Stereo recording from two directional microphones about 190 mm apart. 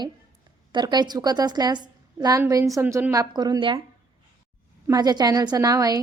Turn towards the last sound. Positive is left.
turn(degrees=-20)  # may be behind; listen again after turning